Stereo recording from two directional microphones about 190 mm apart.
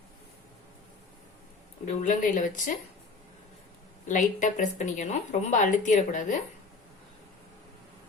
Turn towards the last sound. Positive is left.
turn(degrees=40)  # may be behind; listen again after turning